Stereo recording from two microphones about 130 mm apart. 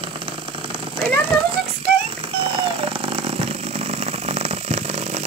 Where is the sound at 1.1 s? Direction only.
10° left (ahead or behind).